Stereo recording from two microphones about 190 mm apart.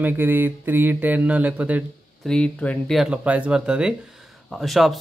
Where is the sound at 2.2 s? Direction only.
5° left (ahead or behind).